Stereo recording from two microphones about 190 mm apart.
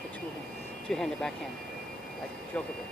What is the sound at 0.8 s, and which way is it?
Speech, 5° left (ahead or behind).